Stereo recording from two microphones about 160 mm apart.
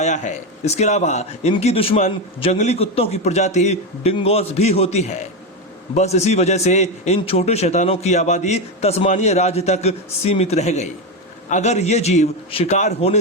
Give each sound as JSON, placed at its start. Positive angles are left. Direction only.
{"t": 0.0, "sound": "a man's voice", "side_deg": 45}